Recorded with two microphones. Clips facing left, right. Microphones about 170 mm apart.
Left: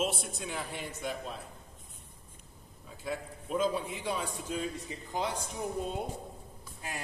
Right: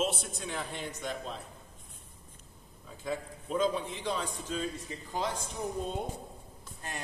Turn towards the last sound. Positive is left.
turn(degrees=5)  # may be behind; listen again after turning